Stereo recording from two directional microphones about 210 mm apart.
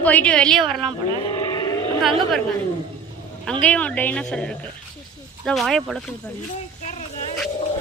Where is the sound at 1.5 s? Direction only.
15° left (ahead or behind).